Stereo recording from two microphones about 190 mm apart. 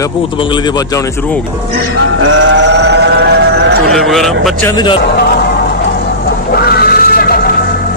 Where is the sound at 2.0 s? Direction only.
90° right; by 3.8 s 60° right (ahead or behind).